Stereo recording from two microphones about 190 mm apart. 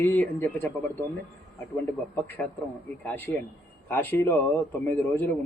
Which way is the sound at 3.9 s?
10° left (ahead or behind).